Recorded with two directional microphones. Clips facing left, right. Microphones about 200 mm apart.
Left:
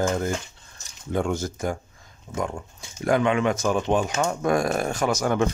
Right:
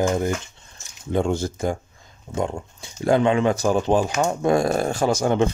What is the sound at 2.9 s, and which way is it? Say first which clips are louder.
Speech: right 3 dB; 30° right (ahead or behind).